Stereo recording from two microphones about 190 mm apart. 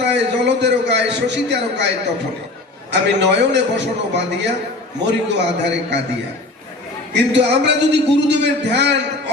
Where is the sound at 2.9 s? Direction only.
65° right (ahead or behind).